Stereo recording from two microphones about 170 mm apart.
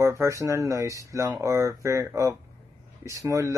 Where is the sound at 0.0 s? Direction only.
15° right (ahead or behind).